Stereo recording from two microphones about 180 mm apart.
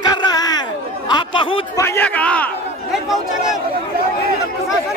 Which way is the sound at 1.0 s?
25° left (ahead or behind).